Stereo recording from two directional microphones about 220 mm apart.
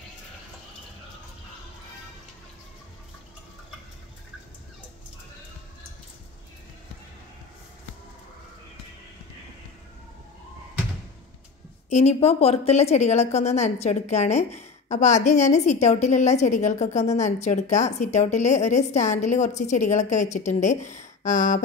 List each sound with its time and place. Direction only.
11.9 s a woman's voice: 30° left (ahead or behind)